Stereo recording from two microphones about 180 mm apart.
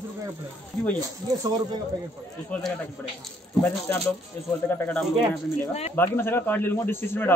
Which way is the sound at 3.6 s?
20° left (ahead or behind).